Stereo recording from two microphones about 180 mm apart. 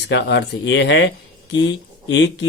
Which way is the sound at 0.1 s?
70° left (ahead or behind).